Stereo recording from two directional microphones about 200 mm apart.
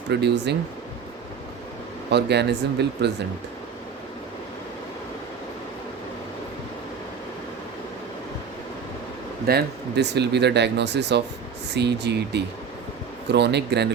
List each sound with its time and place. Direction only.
0.1 s speech: 55° right (ahead or behind)
2.0 s speech: 55° right (ahead or behind)
9.5 s speech: 55° right (ahead or behind)